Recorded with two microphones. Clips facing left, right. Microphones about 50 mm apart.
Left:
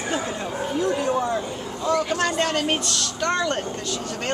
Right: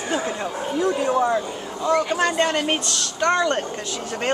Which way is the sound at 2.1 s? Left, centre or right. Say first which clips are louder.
Right 2 dB; centre.